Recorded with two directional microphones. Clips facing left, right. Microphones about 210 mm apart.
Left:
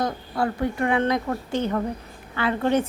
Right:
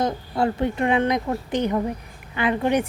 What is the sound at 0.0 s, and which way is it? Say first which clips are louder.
Speech: right 3 dB; 25° right (ahead or behind).